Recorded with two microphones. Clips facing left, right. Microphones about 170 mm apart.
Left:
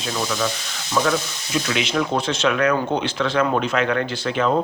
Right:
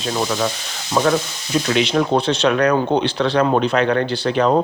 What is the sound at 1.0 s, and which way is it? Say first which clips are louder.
Speech: right 3 dB; 35° right (ahead or behind).